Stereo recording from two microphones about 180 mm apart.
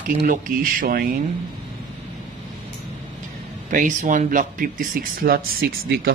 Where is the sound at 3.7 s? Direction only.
45° right (ahead or behind).